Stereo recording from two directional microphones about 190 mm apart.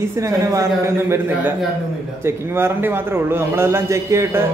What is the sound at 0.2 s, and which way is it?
A man's voice, 15° right (ahead or behind).